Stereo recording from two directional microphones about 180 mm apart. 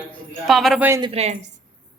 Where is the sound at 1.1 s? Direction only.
35° right (ahead or behind).